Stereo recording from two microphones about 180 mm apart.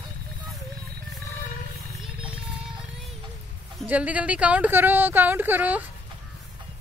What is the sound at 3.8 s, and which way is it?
Speech, 10° right (ahead or behind).